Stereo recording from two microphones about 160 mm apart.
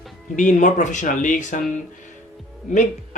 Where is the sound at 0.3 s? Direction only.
50° left (ahead or behind).